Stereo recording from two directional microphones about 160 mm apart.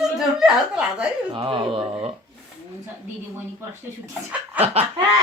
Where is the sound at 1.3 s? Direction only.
30° right (ahead or behind).